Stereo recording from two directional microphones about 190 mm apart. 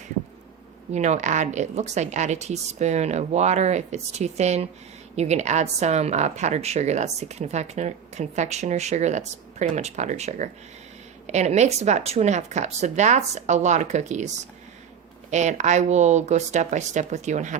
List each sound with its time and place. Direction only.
0.9 s a woman's voice: 40° right (ahead or behind)